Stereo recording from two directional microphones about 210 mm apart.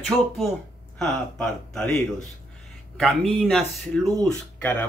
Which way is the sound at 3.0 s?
5° left (ahead or behind).